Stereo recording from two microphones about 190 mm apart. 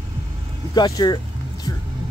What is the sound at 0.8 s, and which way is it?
Speech, 20° left (ahead or behind).